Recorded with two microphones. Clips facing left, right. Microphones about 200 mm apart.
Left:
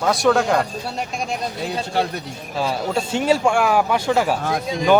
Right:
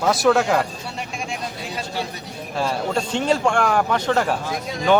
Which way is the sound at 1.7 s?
60° left (ahead or behind).